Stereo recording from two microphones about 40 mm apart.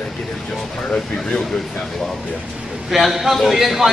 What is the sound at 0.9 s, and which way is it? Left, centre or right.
Speech, left.